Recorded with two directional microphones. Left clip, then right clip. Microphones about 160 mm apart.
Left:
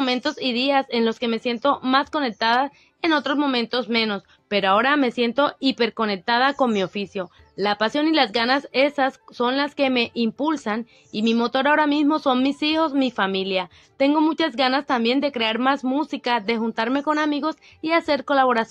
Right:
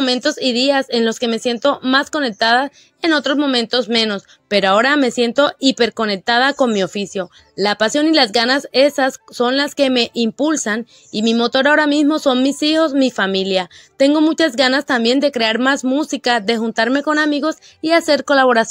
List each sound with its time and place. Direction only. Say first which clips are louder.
0.0 s speech: right 6 dB; 35° right (ahead or behind)